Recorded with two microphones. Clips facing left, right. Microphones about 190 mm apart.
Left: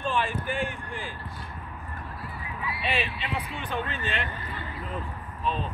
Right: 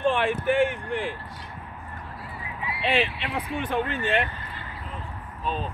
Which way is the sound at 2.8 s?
80° right.